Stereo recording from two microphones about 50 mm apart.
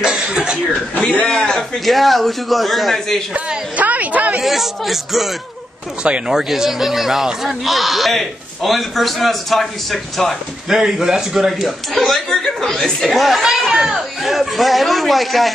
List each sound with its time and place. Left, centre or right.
0.0 s cough: centre
1.3 s a man's voice: centre
1.9 s a man's voice: centre
3.7 s a sound: right
4.4 s a man's voice: centre
6.0 s speech: right
6.3 s a man's voice: centre
10.7 s a man's voice: centre